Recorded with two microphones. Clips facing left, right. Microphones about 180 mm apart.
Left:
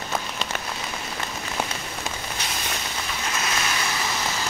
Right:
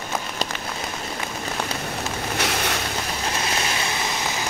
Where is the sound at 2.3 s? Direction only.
70° right (ahead or behind).